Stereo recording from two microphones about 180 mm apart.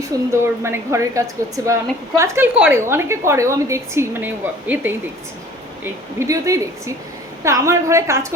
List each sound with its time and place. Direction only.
0.1 s a woman's voice: 15° right (ahead or behind)